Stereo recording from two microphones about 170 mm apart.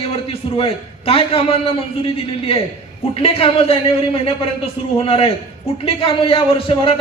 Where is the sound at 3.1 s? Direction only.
35° left (ahead or behind).